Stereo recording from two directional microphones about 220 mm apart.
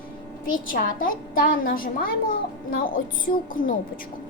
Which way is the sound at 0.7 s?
40° left (ahead or behind).